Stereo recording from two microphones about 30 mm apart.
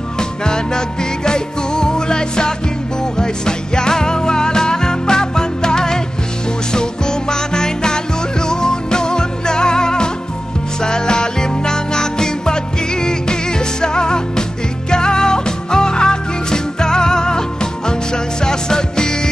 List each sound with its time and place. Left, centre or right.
0.2 s music: left